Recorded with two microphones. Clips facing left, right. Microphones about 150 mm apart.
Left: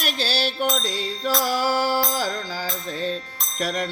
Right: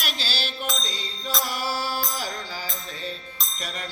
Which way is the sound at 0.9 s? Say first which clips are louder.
Left 8 dB; 80° left.